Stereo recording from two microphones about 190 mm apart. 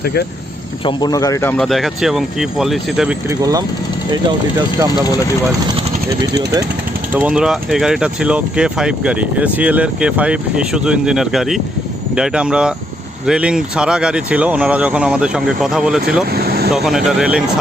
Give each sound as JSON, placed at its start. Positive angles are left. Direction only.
{"t": 0.0, "sound": "speech", "side_deg": 60}
{"t": 0.9, "sound": "speech", "side_deg": 20}
{"t": 1.5, "sound": "speech", "side_deg": 0}
{"t": 3.2, "sound": "speech", "side_deg": -20}
{"t": 7.1, "sound": "speech", "side_deg": -5}
{"t": 16.3, "sound": "vehicle", "side_deg": -50}
{"t": 16.7, "sound": "speech", "side_deg": 0}